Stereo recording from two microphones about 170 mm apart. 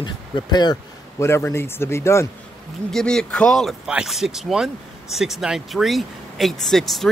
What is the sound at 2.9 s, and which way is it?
Speech, 5° left (ahead or behind).